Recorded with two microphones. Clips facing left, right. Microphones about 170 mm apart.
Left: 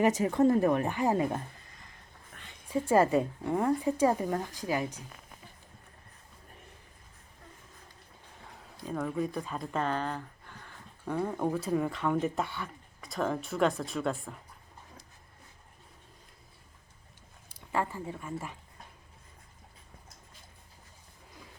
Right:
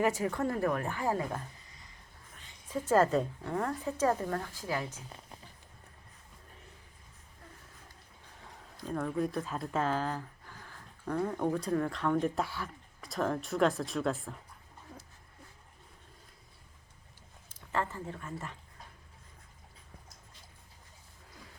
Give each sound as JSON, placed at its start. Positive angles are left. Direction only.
{"t": 0.0, "sound": "speech", "side_deg": 20}
{"t": 2.3, "sound": "a sound", "side_deg": 60}
{"t": 2.6, "sound": "a woman's voice", "side_deg": 10}
{"t": 8.8, "sound": "speech", "side_deg": 5}
{"t": 17.5, "sound": "speech", "side_deg": 10}